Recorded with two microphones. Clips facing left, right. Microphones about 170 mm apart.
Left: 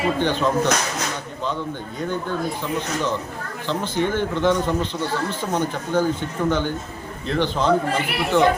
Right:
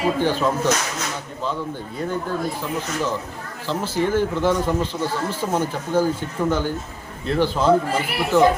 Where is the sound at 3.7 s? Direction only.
5° right (ahead or behind).